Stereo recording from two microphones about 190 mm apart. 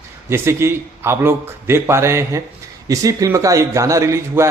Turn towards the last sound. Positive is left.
turn(degrees=-15)  # may be behind; listen again after turning